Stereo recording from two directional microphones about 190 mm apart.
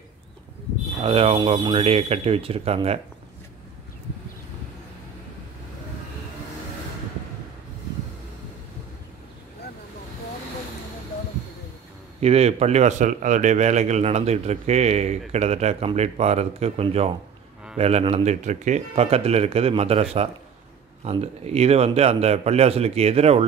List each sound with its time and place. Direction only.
1.0 s a man's voice: 30° right (ahead or behind)
12.2 s a man's voice: 35° right (ahead or behind)